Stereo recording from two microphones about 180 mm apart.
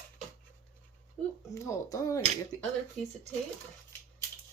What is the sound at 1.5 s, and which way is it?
Speech, 20° left (ahead or behind).